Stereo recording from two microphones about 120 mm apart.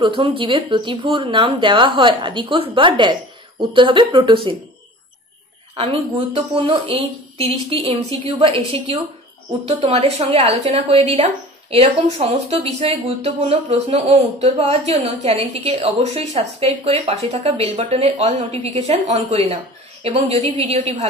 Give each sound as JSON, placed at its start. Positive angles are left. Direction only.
{"t": 0.0, "sound": "speech", "side_deg": -45}
{"t": 5.8, "sound": "speech", "side_deg": -50}
{"t": 9.7, "sound": "speech", "side_deg": -65}